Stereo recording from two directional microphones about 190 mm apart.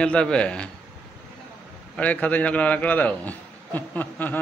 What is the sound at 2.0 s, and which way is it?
A man's voice, 10° left (ahead or behind).